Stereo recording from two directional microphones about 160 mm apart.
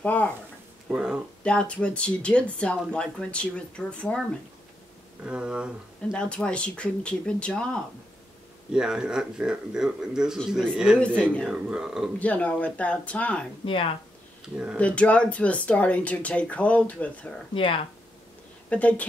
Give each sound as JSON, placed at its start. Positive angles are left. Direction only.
{"t": 0.0, "sound": "speech", "side_deg": 10}
{"t": 0.8, "sound": "a sound", "side_deg": -5}
{"t": 1.4, "sound": "speech", "side_deg": 5}
{"t": 5.2, "sound": "speech", "side_deg": -5}
{"t": 6.1, "sound": "speech", "side_deg": 5}
{"t": 8.7, "sound": "speech", "side_deg": -5}
{"t": 11.4, "sound": "speech", "side_deg": -5}
{"t": 12.2, "sound": "speech", "side_deg": 10}
{"t": 14.8, "sound": "speech", "side_deg": 10}
{"t": 17.6, "sound": "speech", "side_deg": 35}
{"t": 18.7, "sound": "speech", "side_deg": 10}